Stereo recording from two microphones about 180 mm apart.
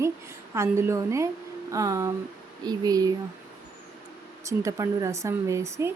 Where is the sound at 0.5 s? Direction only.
15° right (ahead or behind).